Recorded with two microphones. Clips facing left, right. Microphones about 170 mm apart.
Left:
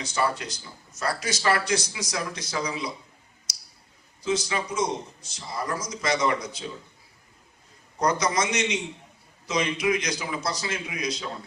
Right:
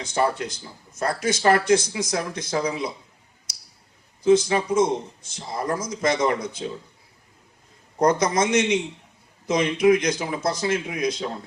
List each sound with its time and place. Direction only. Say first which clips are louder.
0.0 s speech: right 4 dB; 50° right (ahead or behind)
4.2 s speech: right 9 dB; 50° right (ahead or behind)
7.9 s speech: right 5 dB; 50° right (ahead or behind)